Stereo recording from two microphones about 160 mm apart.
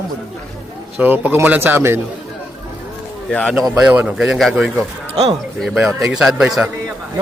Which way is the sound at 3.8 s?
5° right (ahead or behind).